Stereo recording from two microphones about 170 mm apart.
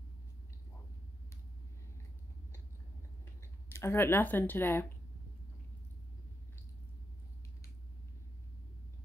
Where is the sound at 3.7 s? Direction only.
15° left (ahead or behind).